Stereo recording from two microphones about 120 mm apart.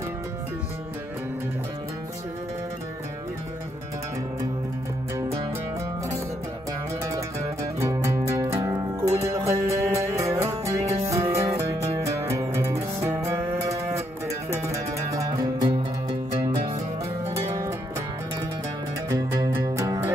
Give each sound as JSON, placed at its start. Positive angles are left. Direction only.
{"t": 7.8, "sound": "music", "side_deg": -25}
{"t": 19.0, "sound": "music", "side_deg": -30}